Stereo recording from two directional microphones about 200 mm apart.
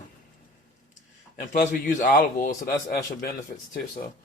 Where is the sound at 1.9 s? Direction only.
40° left (ahead or behind).